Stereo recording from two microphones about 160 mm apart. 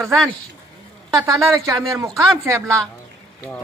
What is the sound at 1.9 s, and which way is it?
Speech, 20° right (ahead or behind).